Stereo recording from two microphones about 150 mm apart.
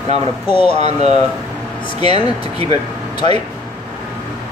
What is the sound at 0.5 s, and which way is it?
Speech, 35° left (ahead or behind).